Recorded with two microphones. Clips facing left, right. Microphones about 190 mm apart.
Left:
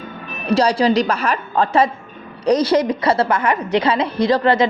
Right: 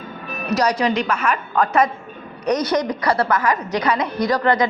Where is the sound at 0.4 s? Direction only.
30° left (ahead or behind).